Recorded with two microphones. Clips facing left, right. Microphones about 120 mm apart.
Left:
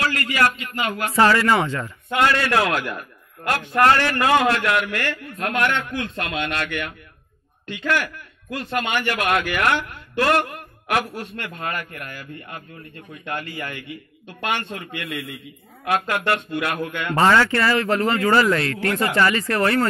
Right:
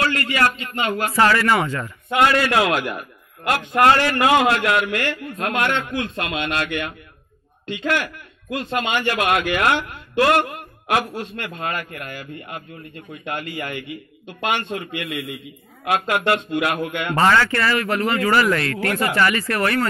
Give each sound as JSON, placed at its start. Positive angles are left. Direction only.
{"t": 0.1, "sound": "speech", "side_deg": -30}
{"t": 1.1, "sound": "speech", "side_deg": 20}
{"t": 2.0, "sound": "a man's voice", "side_deg": -15}
{"t": 17.2, "sound": "speech", "side_deg": 20}